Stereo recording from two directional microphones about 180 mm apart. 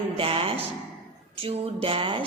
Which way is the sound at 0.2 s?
30° right (ahead or behind).